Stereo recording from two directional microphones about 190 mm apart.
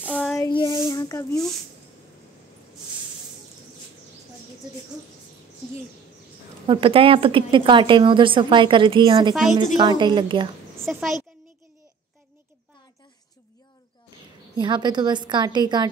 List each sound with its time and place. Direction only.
0.0 s child singing: centre (ahead or behind)
0.4 s child singing: 20° left (ahead or behind)
0.7 s a sound: 15° left (ahead or behind)
6.7 s a woman's voice: 30° right (ahead or behind)
9.3 s speech: centre (ahead or behind)
9.8 s a woman's voice: 25° right (ahead or behind)
10.9 s speech: centre (ahead or behind)
14.5 s a woman's voice: 25° right (ahead or behind)